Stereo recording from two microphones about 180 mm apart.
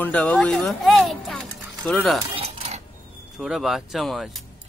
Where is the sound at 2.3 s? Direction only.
35° right (ahead or behind).